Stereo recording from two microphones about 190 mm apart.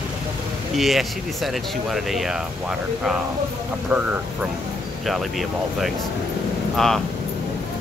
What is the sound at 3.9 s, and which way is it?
Speech, 10° right (ahead or behind).